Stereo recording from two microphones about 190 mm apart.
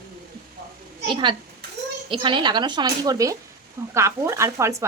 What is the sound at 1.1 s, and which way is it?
Speech, 25° right (ahead or behind).